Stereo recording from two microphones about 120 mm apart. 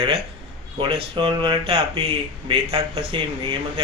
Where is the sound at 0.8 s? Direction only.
45° right (ahead or behind).